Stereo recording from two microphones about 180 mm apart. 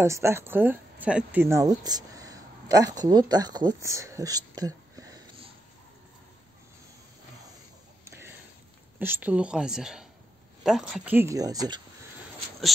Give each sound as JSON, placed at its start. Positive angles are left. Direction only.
{"t": 0.0, "sound": "speech", "side_deg": -15}
{"t": 8.0, "sound": "a sound", "side_deg": -15}
{"t": 9.0, "sound": "a woman's voice", "side_deg": -10}